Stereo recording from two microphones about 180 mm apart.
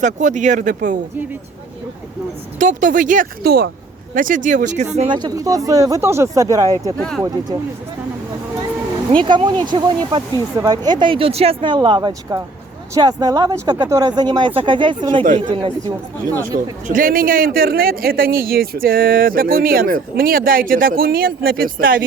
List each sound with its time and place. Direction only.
0.0 s a man's voice: 45° right (ahead or behind)
2.6 s a man's voice: 45° right (ahead or behind)
4.9 s speech: 25° right (ahead or behind)
9.1 s speech: 25° right (ahead or behind)
15.2 s a man's voice: 45° right (ahead or behind)
16.2 s speech: 20° right (ahead or behind)
16.8 s a man's voice: 50° right (ahead or behind)